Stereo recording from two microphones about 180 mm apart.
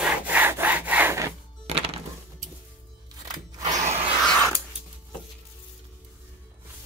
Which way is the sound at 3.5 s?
20° right (ahead or behind).